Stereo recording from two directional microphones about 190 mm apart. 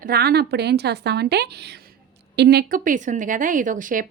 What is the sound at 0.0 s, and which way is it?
Speech, 55° right (ahead or behind).